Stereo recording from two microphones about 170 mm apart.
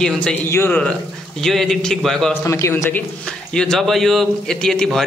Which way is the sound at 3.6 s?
Centre (ahead or behind).